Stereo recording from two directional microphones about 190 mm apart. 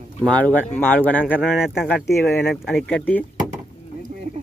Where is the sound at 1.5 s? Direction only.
Centre (ahead or behind).